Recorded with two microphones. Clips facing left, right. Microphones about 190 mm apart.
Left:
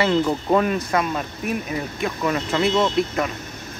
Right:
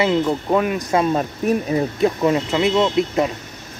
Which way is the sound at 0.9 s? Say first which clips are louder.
Right 5 dB; 35° right (ahead or behind).